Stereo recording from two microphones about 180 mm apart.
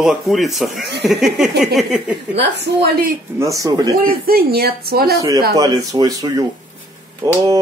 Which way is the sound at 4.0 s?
55° right (ahead or behind).